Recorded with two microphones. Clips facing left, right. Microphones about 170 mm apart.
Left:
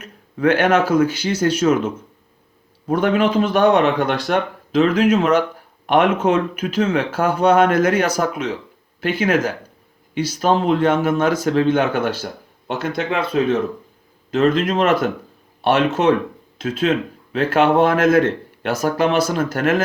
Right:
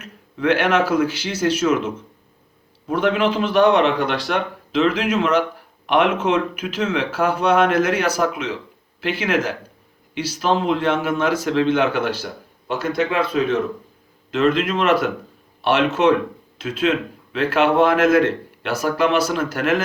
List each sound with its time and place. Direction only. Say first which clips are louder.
0.0 s speech: left 4 dB; 45° left (ahead or behind)
2.8 s speech: left 2 dB; 45° left (ahead or behind)
14.3 s speech: left 2 dB; 40° left (ahead or behind)